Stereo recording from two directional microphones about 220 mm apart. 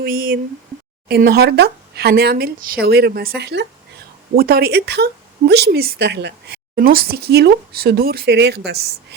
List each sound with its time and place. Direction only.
0.0 s speech: 40° right (ahead or behind)